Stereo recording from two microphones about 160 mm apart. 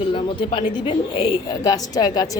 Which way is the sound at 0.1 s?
30° left (ahead or behind).